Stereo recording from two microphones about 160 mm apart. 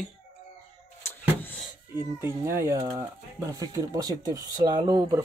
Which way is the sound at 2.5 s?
15° right (ahead or behind).